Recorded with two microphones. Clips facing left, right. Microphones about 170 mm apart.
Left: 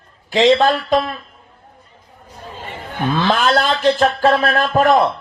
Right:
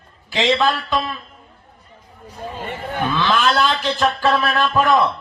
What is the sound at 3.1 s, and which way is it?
Speech, 45° left (ahead or behind).